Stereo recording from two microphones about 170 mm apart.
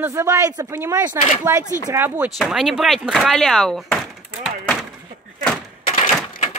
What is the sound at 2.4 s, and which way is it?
Speech, centre (ahead or behind).